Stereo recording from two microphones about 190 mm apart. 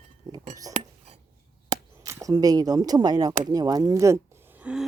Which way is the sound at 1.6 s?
20° right (ahead or behind).